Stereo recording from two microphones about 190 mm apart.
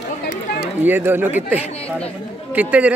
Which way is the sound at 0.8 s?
10° right (ahead or behind).